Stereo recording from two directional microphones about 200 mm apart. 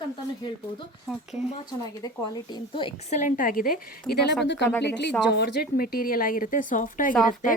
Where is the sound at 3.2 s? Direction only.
45° left (ahead or behind).